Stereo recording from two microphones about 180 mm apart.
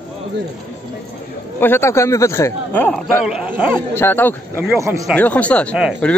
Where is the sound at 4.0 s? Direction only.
10° left (ahead or behind).